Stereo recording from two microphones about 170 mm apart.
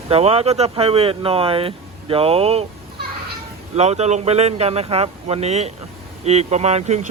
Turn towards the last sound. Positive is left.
turn(degrees=-40)  # may be behind; listen again after turning